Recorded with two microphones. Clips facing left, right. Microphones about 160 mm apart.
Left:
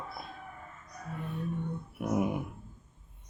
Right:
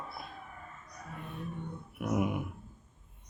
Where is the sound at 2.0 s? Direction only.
30° left (ahead or behind).